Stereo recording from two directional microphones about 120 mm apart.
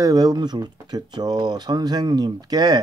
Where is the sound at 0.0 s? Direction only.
35° right (ahead or behind).